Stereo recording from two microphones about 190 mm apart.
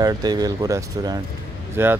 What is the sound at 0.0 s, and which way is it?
Speech, 20° right (ahead or behind).